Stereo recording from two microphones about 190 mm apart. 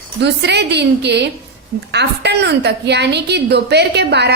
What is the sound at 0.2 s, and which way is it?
A woman's voice, 65° right (ahead or behind).